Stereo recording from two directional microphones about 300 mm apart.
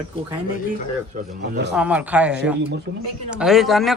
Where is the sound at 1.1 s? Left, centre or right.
Right.